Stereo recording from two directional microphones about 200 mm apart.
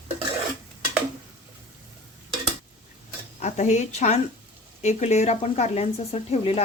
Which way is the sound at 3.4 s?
35° left (ahead or behind).